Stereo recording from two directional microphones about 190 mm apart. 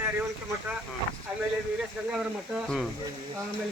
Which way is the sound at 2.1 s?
5° right (ahead or behind).